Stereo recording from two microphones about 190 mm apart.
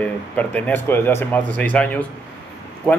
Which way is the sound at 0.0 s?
10° left (ahead or behind).